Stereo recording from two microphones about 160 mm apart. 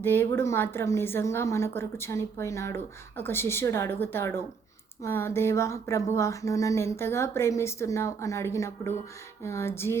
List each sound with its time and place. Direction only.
0.0 s a woman's voice: 15° left (ahead or behind)